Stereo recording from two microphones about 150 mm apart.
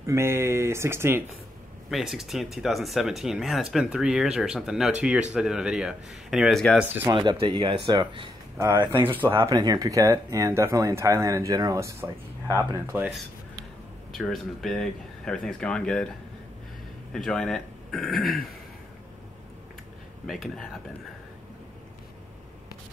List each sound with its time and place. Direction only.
0.0 s speech: 20° right (ahead or behind)
1.9 s speech: centre (ahead or behind)
7.2 s speech: 35° right (ahead or behind)
8.5 s speech: 15° right (ahead or behind)
9.5 s speech: 25° right (ahead or behind)
14.1 s speech: centre (ahead or behind)
17.1 s speech: 5° left (ahead or behind)
20.2 s speech: centre (ahead or behind)